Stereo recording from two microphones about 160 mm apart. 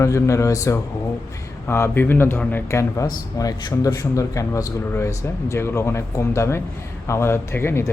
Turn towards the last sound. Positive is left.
turn(degrees=15)  # may be behind; listen again after turning